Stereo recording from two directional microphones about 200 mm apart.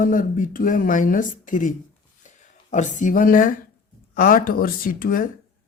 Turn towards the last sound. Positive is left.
turn(degrees=45)  # may be behind; listen again after turning